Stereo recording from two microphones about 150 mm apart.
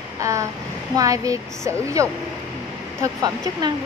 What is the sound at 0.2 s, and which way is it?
Speech, 20° right (ahead or behind).